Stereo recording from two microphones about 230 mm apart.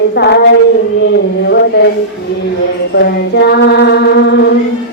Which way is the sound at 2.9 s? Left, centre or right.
Left.